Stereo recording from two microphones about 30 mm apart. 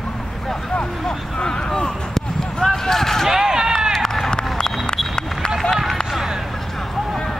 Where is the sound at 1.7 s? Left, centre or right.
Centre.